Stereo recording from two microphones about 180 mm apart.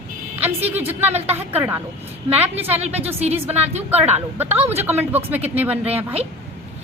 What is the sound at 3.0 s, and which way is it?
Speech, 35° right (ahead or behind).